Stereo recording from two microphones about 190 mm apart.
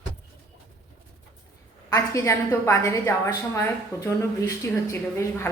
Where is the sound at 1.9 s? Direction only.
15° left (ahead or behind).